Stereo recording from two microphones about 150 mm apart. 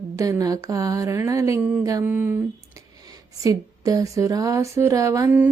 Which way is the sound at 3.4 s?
25° right (ahead or behind).